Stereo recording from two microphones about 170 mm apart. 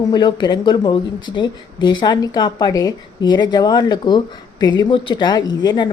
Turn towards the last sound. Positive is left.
turn(degrees=25)  # may be behind; listen again after turning